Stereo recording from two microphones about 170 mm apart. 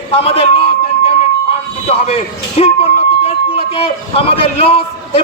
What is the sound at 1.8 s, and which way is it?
A man's voice, 35° left (ahead or behind).